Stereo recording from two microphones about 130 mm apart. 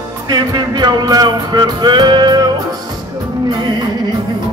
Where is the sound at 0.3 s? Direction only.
30° right (ahead or behind).